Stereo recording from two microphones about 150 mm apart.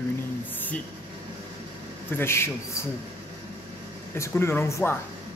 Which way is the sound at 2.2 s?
15° left (ahead or behind).